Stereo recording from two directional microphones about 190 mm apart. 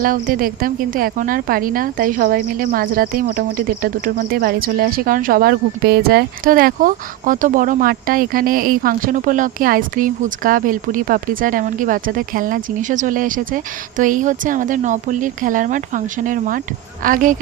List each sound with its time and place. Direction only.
0.0 s a woman's voice: 50° right (ahead or behind)